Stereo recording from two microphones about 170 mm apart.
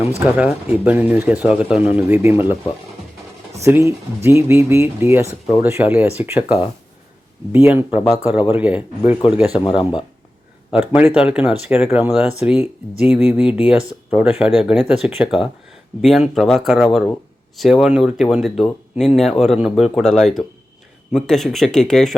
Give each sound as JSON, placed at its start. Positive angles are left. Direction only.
{"t": 0.3, "sound": "speech", "side_deg": -10}
{"t": 3.6, "sound": "speech", "side_deg": -15}
{"t": 9.2, "sound": "speech", "side_deg": 30}
{"t": 10.7, "sound": "speech", "side_deg": -5}